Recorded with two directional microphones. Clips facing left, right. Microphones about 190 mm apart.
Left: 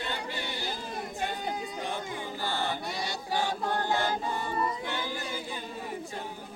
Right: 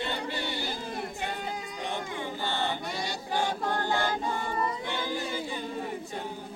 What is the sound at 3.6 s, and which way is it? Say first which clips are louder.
Choir: even; 15° left (ahead or behind).